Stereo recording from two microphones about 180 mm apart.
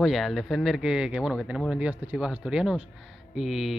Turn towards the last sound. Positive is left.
turn(degrees=0)  # may be behind; listen again after turning